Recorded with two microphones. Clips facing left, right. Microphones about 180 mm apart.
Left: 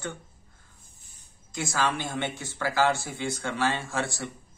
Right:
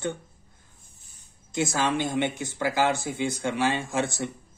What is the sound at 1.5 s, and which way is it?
Speech, 20° right (ahead or behind).